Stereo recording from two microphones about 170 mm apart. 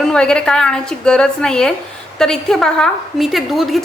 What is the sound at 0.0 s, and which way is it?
A woman's voice, 5° left (ahead or behind).